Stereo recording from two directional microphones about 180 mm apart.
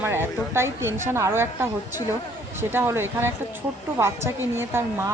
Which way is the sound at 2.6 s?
15° right (ahead or behind).